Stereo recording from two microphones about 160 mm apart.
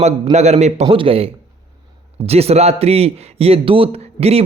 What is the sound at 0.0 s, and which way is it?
A man's voice, 45° right (ahead or behind).